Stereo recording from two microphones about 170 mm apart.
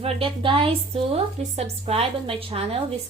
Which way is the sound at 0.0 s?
35° right (ahead or behind).